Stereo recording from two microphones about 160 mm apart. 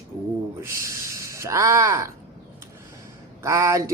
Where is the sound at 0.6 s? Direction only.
15° right (ahead or behind).